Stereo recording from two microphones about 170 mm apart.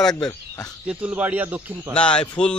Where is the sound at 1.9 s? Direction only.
5° left (ahead or behind).